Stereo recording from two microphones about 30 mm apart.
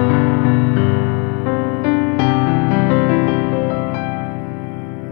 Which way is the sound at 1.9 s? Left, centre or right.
Centre.